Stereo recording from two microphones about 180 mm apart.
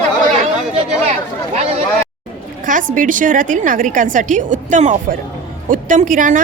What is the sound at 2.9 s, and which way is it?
A woman's voice, 45° right (ahead or behind).